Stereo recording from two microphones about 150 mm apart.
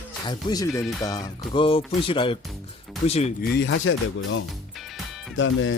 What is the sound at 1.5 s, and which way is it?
Speech, 35° left (ahead or behind).